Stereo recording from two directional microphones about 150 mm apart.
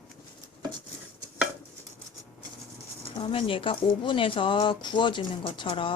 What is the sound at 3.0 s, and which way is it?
Speech, 35° left (ahead or behind).